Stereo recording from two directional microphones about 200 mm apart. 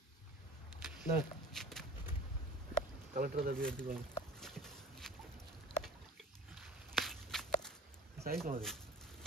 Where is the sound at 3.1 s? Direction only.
45° right (ahead or behind).